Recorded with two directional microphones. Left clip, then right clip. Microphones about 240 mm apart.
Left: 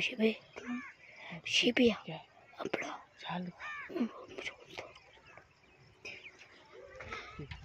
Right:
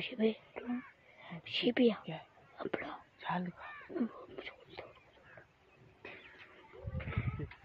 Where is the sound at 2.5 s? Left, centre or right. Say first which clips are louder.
Left 2 dB; centre.